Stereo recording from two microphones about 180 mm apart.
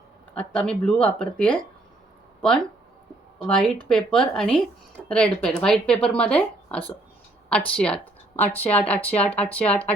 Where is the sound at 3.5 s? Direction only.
5° left (ahead or behind).